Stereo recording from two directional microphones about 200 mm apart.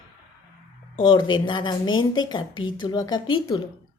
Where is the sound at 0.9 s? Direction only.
25° left (ahead or behind).